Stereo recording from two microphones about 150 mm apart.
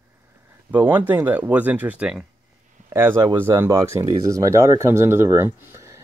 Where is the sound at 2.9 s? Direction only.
15° right (ahead or behind).